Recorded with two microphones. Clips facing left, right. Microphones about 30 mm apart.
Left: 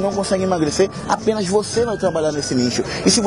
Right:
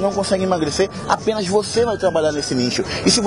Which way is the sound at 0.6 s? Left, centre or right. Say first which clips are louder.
Left 2 dB; centre.